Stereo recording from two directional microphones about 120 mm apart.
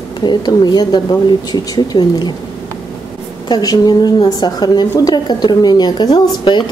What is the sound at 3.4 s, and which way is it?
A woman's voice, 35° left (ahead or behind).